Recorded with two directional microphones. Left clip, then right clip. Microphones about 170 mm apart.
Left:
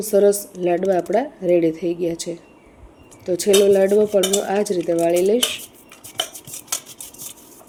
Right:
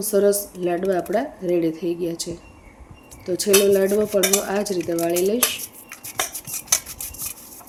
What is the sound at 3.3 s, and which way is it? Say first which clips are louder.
Speech: left 2 dB; 15° left (ahead or behind).